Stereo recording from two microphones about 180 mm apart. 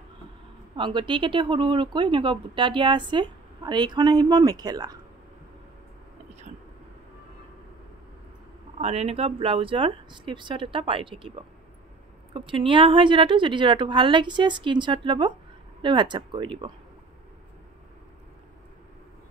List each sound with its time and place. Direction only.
0.7 s speech: 25° right (ahead or behind)
8.7 s speech: 35° right (ahead or behind)